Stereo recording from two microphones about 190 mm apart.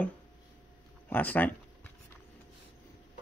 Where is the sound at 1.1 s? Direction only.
10° left (ahead or behind).